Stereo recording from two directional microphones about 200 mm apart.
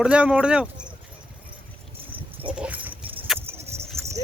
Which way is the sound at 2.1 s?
5° right (ahead or behind).